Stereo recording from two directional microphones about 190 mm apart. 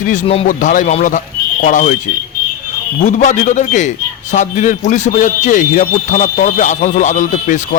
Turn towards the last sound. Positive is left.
turn(degrees=40)  # may be behind; listen again after turning